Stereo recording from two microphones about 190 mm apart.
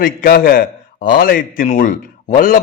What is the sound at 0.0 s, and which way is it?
A man's voice, 50° left (ahead or behind).